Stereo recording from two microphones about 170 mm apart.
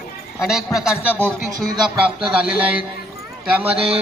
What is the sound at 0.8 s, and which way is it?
Speech, 5° right (ahead or behind).